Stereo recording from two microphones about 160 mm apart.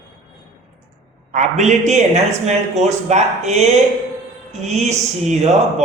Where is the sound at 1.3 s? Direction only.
45° right (ahead or behind).